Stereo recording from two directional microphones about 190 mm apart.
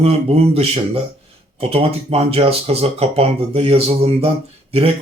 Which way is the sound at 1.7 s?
30° right (ahead or behind).